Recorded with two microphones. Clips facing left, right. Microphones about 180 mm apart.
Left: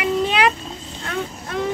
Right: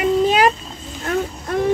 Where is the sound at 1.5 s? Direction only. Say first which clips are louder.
Right 5 dB; 50° right (ahead or behind).